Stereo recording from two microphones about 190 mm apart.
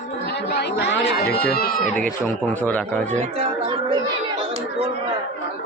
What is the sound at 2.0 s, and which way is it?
Speech, 5° left (ahead or behind).